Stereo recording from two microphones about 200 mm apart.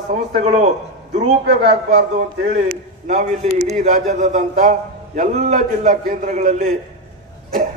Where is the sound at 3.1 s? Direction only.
30° right (ahead or behind).